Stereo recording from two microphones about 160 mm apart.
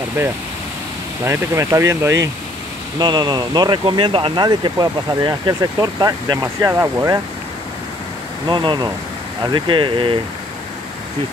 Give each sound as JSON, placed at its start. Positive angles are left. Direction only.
{"t": 1.2, "sound": "speech", "side_deg": -15}
{"t": 8.5, "sound": "speech", "side_deg": -30}